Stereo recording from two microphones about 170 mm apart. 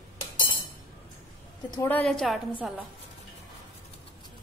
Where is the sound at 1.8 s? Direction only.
10° left (ahead or behind).